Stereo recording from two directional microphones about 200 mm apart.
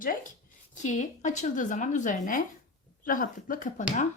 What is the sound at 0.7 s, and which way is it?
A woman's voice, 40° left (ahead or behind).